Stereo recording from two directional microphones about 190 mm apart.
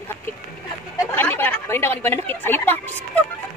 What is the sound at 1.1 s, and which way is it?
A woman's voice, 10° left (ahead or behind).